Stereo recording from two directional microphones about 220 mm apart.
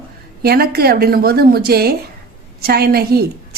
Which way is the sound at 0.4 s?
45° right (ahead or behind).